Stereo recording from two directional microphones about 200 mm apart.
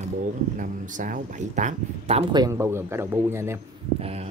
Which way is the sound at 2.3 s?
15° right (ahead or behind).